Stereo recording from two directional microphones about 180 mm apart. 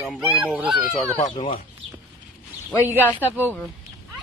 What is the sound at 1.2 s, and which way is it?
Speech, 30° left (ahead or behind).